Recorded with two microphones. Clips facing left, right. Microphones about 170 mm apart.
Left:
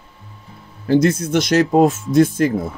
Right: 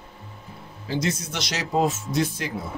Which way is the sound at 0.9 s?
55° left (ahead or behind).